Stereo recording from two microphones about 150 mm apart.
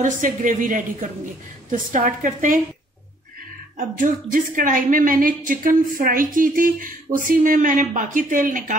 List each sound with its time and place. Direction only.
0.0 s speech: 60° right (ahead or behind)
3.7 s speech: 65° right (ahead or behind)